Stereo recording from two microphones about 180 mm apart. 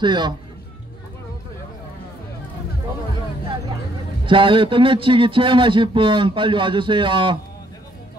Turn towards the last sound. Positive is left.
turn(degrees=-25)  # may be behind; listen again after turning